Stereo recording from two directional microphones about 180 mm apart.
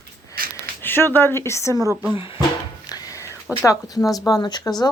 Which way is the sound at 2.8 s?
20° left (ahead or behind).